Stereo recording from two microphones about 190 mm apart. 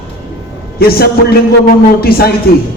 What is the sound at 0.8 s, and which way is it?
A man's voice, 55° left (ahead or behind).